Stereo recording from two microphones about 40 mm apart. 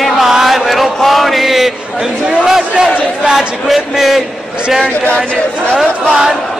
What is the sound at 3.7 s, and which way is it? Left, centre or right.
Speech, centre.